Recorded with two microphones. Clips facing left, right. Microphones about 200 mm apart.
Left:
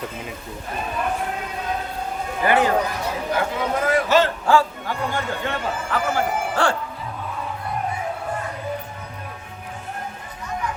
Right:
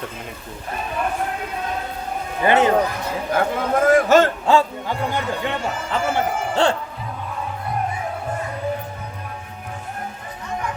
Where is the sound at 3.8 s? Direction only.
45° right (ahead or behind).